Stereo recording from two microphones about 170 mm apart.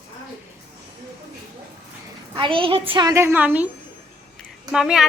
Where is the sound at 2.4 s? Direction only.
30° right (ahead or behind).